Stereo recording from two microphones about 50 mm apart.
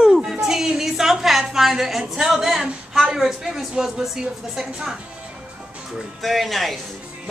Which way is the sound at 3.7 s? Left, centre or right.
Centre.